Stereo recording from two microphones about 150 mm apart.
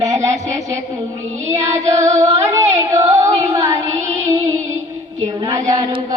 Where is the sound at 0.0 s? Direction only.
20° right (ahead or behind).